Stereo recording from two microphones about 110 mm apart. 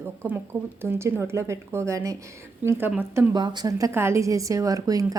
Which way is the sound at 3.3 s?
40° right (ahead or behind).